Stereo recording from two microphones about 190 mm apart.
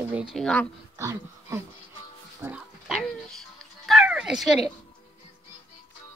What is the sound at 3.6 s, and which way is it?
Cat, centre (ahead or behind).